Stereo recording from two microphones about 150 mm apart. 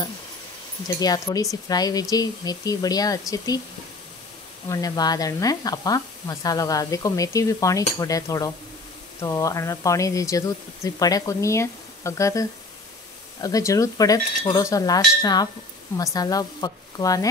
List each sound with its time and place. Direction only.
0.8 s speech: 25° left (ahead or behind)
4.6 s speech: 25° left (ahead or behind)